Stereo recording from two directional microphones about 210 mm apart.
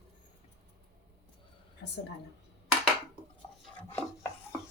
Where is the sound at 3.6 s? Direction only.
5° left (ahead or behind).